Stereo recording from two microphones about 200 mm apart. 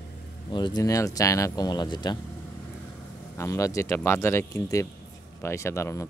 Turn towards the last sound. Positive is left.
turn(degrees=15)  # may be behind; listen again after turning